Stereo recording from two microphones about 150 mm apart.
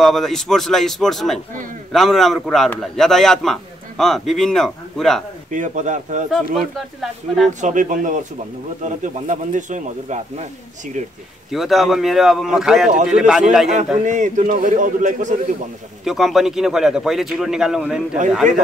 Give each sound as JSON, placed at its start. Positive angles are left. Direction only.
{"t": 0.0, "sound": "a man's voice", "side_deg": 0}
{"t": 5.5, "sound": "a man's voice", "side_deg": -55}
{"t": 6.3, "sound": "a man's voice", "side_deg": 0}
{"t": 7.6, "sound": "a man's voice", "side_deg": -60}
{"t": 11.5, "sound": "a man's voice", "side_deg": 0}
{"t": 14.0, "sound": "a man's voice", "side_deg": -55}
{"t": 16.0, "sound": "a man's voice", "side_deg": 0}